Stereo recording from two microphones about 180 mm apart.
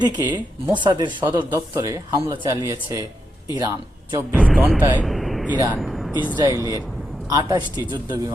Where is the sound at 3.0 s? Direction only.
20° left (ahead or behind).